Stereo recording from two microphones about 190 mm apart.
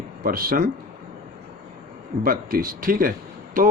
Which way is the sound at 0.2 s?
50° right (ahead or behind).